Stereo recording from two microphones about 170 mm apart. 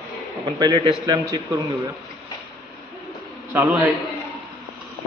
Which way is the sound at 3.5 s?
10° right (ahead or behind).